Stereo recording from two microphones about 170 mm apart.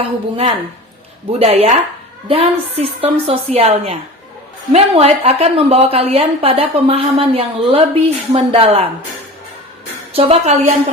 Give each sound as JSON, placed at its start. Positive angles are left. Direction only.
{"t": 0.3, "sound": "a woman's voice", "side_deg": -35}
{"t": 10.1, "sound": "a woman's voice", "side_deg": -35}